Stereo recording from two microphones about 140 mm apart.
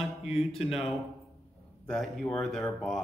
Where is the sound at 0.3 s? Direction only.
45° left (ahead or behind).